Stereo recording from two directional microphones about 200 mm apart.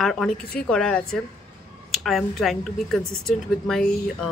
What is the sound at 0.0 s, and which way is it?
Speech, centre (ahead or behind).